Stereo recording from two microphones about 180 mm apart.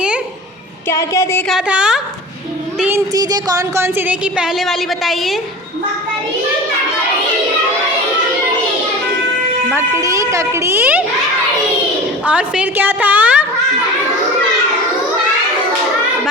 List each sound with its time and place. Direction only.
0.9 s a woman's voice: 15° left (ahead or behind)
1.5 s a woman's voice: 5° right (ahead or behind)
3.1 s a woman's voice: 20° right (ahead or behind); by 5.4 s centre (ahead or behind)
9.7 s a woman's voice: 20° right (ahead or behind)
12.2 s a woman's voice: 5° right (ahead or behind)